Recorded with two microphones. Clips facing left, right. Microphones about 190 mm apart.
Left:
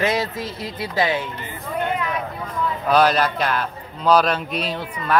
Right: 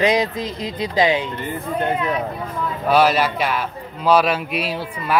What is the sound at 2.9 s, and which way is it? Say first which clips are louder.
A man's voice: right 1 dB; 5° right (ahead or behind).